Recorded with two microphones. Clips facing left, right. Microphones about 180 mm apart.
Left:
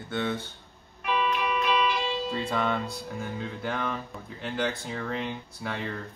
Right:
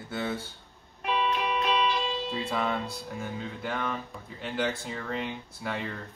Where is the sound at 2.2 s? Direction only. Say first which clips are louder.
Left 2 dB; centre (ahead or behind).